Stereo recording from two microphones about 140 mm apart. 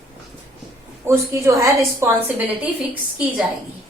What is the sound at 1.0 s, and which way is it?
A woman's voice, 20° right (ahead or behind).